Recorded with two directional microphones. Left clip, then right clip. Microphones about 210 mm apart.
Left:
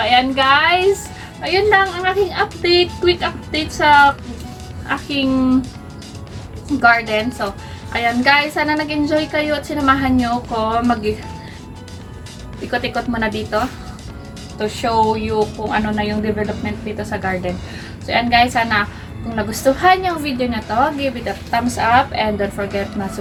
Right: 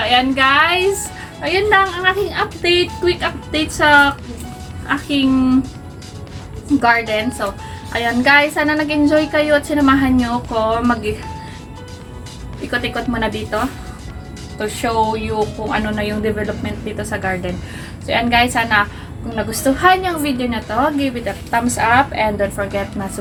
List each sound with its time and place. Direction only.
0.1 s a woman's voice: 5° right (ahead or behind)
6.8 s a woman's voice: centre (ahead or behind)
12.5 s a woman's voice: centre (ahead or behind)
14.6 s a woman's voice: centre (ahead or behind)